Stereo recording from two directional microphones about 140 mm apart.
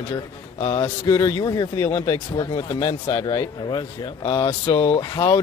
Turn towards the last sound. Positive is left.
turn(degrees=25)  # may be behind; listen again after turning